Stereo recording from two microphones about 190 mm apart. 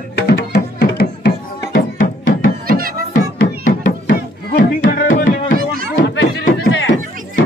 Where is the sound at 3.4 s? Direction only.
50° left (ahead or behind).